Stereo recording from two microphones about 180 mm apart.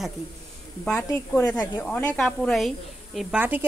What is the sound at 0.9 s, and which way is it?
A woman's voice, 10° left (ahead or behind).